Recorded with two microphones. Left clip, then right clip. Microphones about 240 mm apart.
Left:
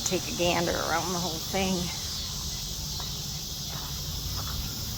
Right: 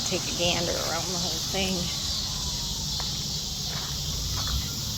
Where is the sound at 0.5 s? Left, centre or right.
Left.